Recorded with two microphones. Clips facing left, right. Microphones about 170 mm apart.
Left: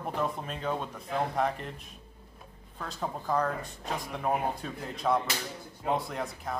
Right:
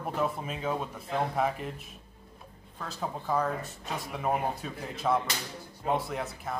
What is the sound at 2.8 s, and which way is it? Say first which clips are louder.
Speech: even; centre (ahead or behind).